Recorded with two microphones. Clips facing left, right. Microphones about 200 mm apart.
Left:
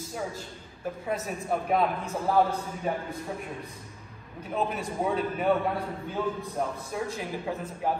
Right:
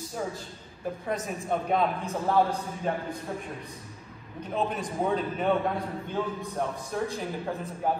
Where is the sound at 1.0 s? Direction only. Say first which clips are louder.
Left 1 dB; 5° left (ahead or behind).